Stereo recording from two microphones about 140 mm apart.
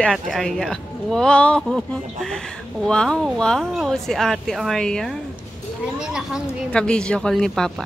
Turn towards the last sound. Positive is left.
turn(degrees=5)  # may be behind; listen again after turning